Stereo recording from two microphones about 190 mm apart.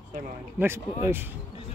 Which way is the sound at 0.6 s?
10° right (ahead or behind).